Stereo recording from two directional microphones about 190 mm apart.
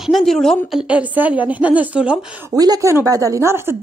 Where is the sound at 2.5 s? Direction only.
20° right (ahead or behind).